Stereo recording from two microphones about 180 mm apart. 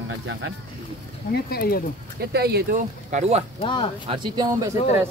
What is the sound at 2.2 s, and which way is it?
Speech, 65° right (ahead or behind).